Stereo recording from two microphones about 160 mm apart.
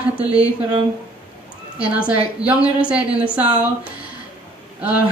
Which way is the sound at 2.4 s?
25° left (ahead or behind).